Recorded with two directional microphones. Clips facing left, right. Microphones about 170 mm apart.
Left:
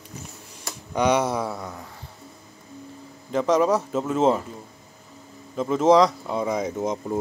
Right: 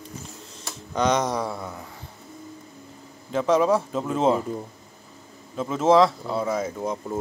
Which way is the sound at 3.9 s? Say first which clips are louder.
Left 1 dB; 5° left (ahead or behind).